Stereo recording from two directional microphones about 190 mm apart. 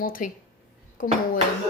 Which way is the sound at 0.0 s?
50° left (ahead or behind).